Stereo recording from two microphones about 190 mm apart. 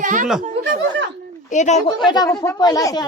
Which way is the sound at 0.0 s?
45° right (ahead or behind).